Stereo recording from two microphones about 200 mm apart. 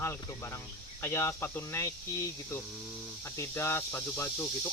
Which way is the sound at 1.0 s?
15° left (ahead or behind).